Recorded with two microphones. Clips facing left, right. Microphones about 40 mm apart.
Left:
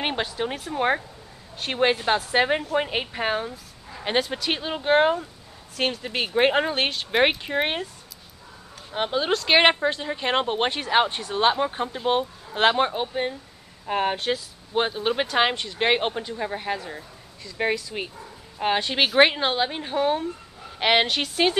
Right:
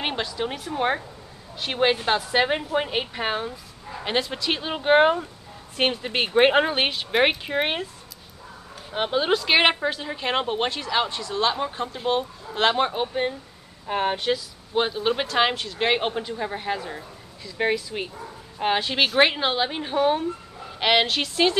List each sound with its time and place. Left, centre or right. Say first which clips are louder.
0.7 s speech: left 1 dB; centre
4.0 s speech: left 1 dB; centre
4.6 s speech: right 2 dB; centre
5.8 s speech: right 2 dB; right; by 7.8 s centre
8.9 s speech: right 1 dB; centre
9.5 s a woman's voice: left 4 dB; centre
10.8 s speech: left 3 dB; left
12.2 s a woman's voice: left 1 dB; centre
20.8 s a woman's voice: even; centre